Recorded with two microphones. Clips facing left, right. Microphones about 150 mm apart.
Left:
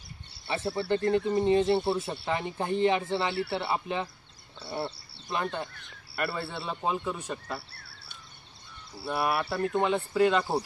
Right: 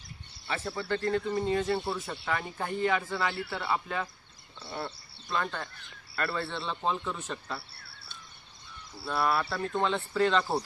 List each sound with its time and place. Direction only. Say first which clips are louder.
0.5 s speech: left 4 dB; 20° left (ahead or behind)
1.9 s speech: left 4 dB; 35° left (ahead or behind)
3.3 s speech: left 3 dB; 10° left (ahead or behind)
9.0 s speech: even; 15° left (ahead or behind)